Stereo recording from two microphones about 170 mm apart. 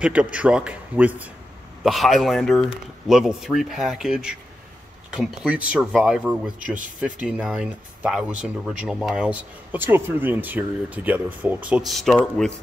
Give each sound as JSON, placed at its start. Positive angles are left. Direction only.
{"t": 0.0, "sound": "a man's voice", "side_deg": -5}